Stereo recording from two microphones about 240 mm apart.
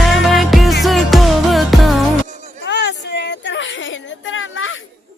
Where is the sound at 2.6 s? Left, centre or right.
Left.